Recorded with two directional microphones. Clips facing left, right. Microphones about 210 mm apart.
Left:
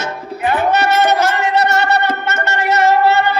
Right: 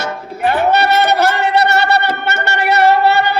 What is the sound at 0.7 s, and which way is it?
Music, 65° right (ahead or behind).